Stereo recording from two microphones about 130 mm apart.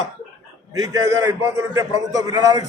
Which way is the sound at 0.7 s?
25° right (ahead or behind).